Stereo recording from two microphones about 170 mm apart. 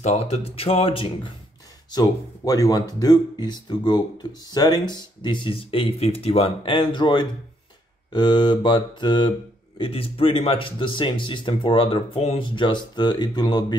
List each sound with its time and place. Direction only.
0.0 s speech: 35° left (ahead or behind)
1.9 s speech: 20° left (ahead or behind)